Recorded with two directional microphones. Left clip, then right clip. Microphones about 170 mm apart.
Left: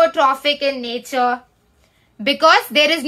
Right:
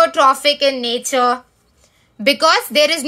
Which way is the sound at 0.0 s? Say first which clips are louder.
Right 2 dB; 20° right (ahead or behind).